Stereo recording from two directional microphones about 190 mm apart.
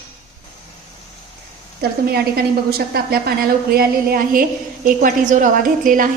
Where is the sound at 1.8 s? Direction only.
55° right (ahead or behind).